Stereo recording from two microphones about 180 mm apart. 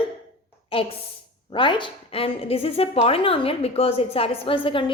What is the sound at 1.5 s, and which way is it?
A woman's voice, 25° left (ahead or behind).